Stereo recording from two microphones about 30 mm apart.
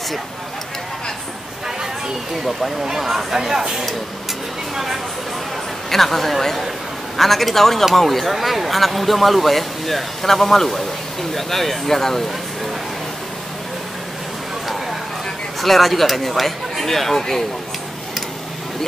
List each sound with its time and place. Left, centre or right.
2.8 s speech: centre
3.1 s speech: centre
3.3 s speech: centre
5.9 s speech: centre
8.3 s speech: centre
15.6 s speech: centre